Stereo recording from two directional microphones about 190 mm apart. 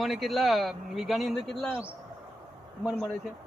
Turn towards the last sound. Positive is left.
turn(degrees=0)  # may be behind; listen again after turning